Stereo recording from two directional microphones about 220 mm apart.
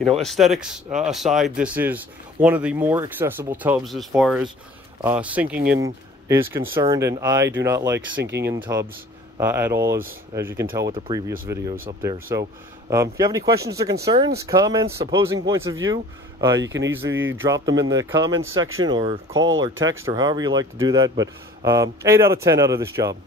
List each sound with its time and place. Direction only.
0.0 s speech: centre (ahead or behind); by 8.2 s 15° right (ahead or behind)
8.2 s speech: 50° right (ahead or behind)
8.5 s speech: 15° right (ahead or behind)
16.6 s speech: 55° right (ahead or behind)
17.4 s speech: 15° right (ahead or behind)
18.3 s speech: 65° right (ahead or behind)
18.9 s speech: 20° right (ahead or behind)
19.3 s speech: 60° right (ahead or behind)
20.1 s speech: 15° right (ahead or behind)